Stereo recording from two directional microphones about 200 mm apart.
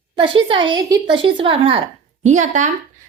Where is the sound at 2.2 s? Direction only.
35° right (ahead or behind).